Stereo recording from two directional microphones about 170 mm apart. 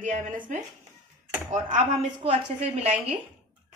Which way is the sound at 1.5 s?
45° right (ahead or behind).